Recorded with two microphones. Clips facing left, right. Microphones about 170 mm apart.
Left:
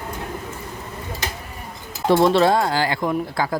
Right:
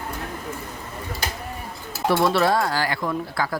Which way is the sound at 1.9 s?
20° left (ahead or behind).